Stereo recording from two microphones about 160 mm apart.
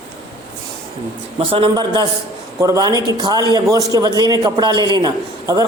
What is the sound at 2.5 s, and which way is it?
A man's voice, 20° right (ahead or behind).